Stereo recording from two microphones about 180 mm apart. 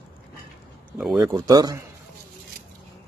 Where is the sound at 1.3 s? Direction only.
20° right (ahead or behind).